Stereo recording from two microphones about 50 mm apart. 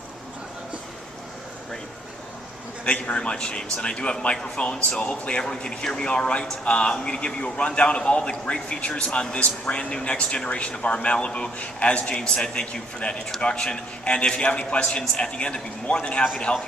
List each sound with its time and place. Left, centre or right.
2.8 s a man's voice: left